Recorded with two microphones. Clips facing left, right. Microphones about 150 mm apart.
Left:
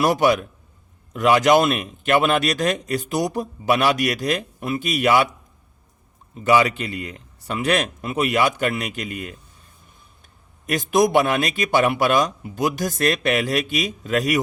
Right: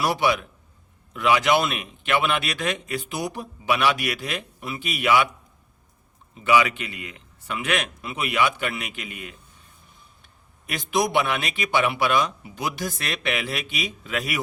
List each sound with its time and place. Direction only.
0.0 s a man's voice: 45° left (ahead or behind)
6.3 s speech: 40° left (ahead or behind)
10.7 s a man's voice: 45° left (ahead or behind)